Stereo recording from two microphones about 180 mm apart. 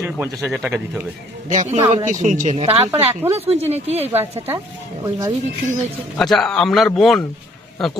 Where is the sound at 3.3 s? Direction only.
35° right (ahead or behind).